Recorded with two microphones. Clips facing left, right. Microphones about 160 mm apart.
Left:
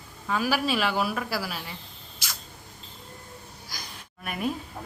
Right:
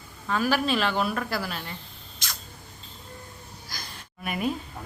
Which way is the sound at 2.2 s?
5° left (ahead or behind).